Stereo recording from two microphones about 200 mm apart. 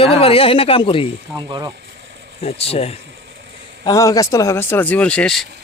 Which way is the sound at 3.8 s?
15° left (ahead or behind).